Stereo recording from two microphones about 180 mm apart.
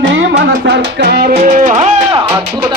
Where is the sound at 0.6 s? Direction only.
65° right (ahead or behind).